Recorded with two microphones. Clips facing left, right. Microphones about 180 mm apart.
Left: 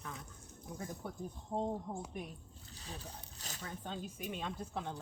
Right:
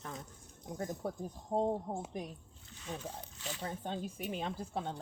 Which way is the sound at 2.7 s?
35° left (ahead or behind).